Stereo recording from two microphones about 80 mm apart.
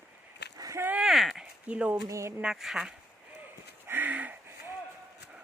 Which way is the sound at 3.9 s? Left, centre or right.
Right.